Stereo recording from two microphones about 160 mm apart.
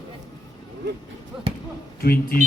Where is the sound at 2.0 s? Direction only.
70° left (ahead or behind).